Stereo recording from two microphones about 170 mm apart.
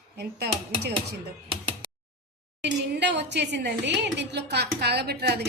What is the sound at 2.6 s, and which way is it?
A woman's voice, 90° right.